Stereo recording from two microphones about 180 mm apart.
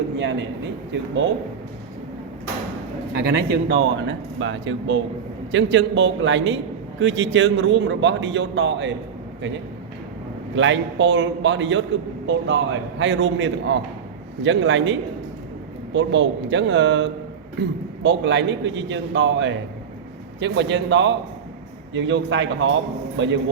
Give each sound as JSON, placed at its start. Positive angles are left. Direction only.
{"t": 0.2, "sound": "a man's voice", "side_deg": -80}
{"t": 3.2, "sound": "a man's voice", "side_deg": -65}
{"t": 4.4, "sound": "a man's voice", "side_deg": -90}
{"t": 10.5, "sound": "a man's voice", "side_deg": -90}